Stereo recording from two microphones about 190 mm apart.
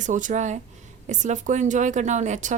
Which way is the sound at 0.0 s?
40° right (ahead or behind).